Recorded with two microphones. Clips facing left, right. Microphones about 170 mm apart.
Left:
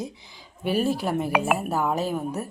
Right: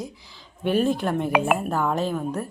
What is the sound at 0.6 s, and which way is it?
Speech, 5° left (ahead or behind).